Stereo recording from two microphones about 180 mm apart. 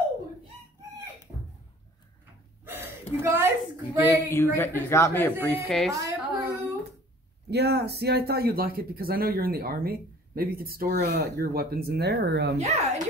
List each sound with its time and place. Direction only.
2.6 s a woman's voice: 10° right (ahead or behind)
4.6 s speech: 10° left (ahead or behind)
5.9 s a sound: 20° right (ahead or behind)
7.4 s speech: 65° right (ahead or behind)
12.5 s speech: 40° right (ahead or behind)